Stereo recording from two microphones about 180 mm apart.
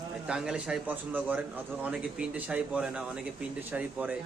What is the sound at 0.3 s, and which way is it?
A man's voice, 5° right (ahead or behind).